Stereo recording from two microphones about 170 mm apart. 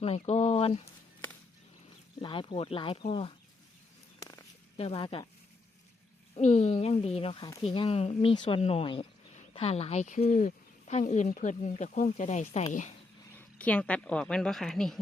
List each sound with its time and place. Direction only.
0.0 s speech: 35° left (ahead or behind)
2.2 s speech: 30° left (ahead or behind)
4.8 s speech: 35° left (ahead or behind)
6.3 s speech: 40° left (ahead or behind)
13.3 s speech: 10° left (ahead or behind)